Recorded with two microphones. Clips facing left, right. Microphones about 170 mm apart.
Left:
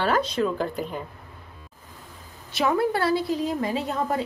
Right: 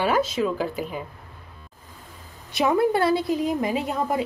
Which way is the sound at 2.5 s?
15° right (ahead or behind).